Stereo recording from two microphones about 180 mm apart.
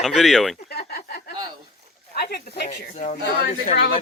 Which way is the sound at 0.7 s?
60° left (ahead or behind).